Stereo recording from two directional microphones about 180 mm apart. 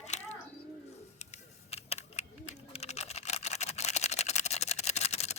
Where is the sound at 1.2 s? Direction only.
35° left (ahead or behind).